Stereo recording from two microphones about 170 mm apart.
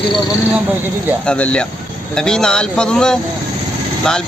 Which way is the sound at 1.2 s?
5° left (ahead or behind).